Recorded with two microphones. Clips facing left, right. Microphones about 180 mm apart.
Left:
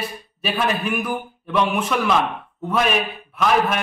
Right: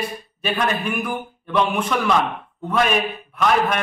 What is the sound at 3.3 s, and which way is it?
Speech, 5° left (ahead or behind).